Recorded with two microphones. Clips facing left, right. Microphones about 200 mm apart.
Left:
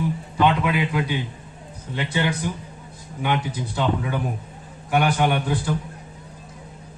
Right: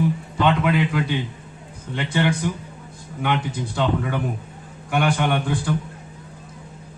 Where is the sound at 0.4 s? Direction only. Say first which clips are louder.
Right 1 dB; 55° right (ahead or behind).